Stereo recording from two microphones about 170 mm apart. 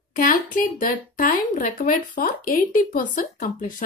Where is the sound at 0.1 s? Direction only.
50° left (ahead or behind).